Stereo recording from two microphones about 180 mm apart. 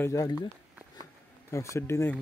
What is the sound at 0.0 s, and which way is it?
Speech, 20° left (ahead or behind).